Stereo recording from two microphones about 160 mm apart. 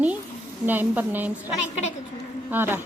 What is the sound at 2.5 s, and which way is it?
Speech, 15° right (ahead or behind).